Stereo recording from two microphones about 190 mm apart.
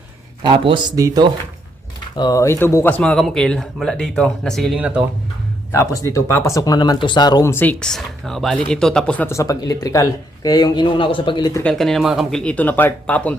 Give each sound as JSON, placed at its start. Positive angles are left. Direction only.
{"t": 0.4, "sound": "speech", "side_deg": -25}
{"t": 2.1, "sound": "speech", "side_deg": 20}
{"t": 5.7, "sound": "speech", "side_deg": 15}
{"t": 11.6, "sound": "speech", "side_deg": 5}